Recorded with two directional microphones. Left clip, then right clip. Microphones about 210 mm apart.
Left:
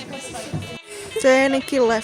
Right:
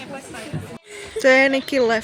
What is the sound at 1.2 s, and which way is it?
Speech, centre (ahead or behind).